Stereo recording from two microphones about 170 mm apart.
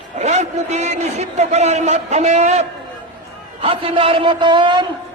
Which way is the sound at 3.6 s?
30° right (ahead or behind).